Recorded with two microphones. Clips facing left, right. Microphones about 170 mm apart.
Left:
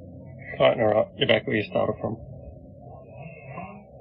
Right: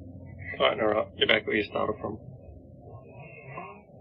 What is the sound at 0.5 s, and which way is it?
Speech, 50° left (ahead or behind).